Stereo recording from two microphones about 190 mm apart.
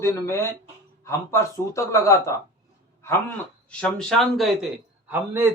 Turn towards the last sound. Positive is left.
turn(degrees=-10)  # may be behind; listen again after turning